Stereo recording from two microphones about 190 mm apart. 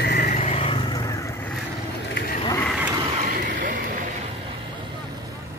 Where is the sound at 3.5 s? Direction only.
45° right (ahead or behind).